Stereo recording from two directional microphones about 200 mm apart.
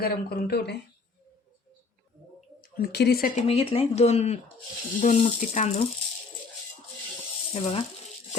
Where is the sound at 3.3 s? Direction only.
30° left (ahead or behind).